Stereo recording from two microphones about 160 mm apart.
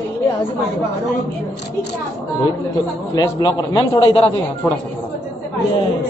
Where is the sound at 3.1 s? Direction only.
25° left (ahead or behind).